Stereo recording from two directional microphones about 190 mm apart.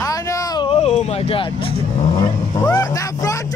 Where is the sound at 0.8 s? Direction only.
35° left (ahead or behind).